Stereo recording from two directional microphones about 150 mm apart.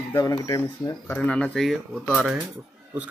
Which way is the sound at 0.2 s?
25° left (ahead or behind).